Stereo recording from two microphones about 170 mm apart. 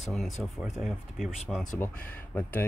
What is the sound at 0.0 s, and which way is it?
Speech, centre (ahead or behind).